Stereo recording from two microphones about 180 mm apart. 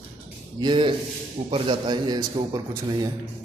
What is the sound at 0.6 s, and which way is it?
A man's voice, 25° right (ahead or behind).